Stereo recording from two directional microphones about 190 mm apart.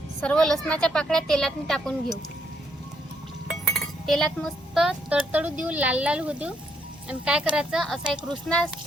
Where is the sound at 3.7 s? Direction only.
Centre (ahead or behind).